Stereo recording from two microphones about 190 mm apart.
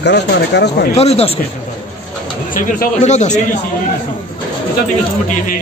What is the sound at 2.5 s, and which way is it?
Speech, 40° left (ahead or behind).